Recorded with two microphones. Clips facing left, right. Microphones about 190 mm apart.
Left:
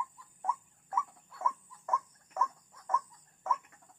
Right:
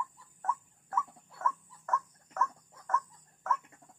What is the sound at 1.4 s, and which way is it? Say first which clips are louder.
Dog: right 1 dB; 10° left (ahead or behind).